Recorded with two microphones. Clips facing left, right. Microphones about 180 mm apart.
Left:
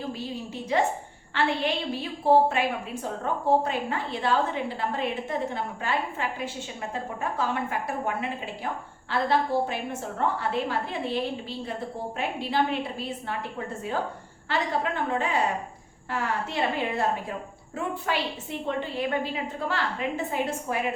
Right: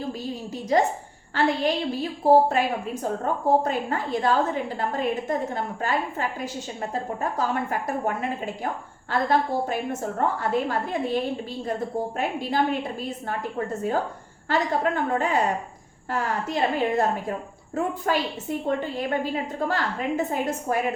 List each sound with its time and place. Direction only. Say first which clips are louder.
0.1 s a woman's voice: right 2 dB; 40° right (ahead or behind)